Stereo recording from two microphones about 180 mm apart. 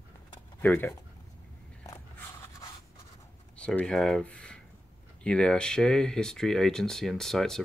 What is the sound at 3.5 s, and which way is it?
Speech, 5° left (ahead or behind).